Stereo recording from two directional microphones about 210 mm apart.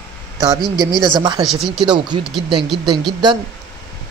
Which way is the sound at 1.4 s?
Centre (ahead or behind).